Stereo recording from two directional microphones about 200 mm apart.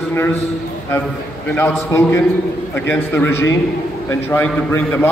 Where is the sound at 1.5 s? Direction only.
10° left (ahead or behind).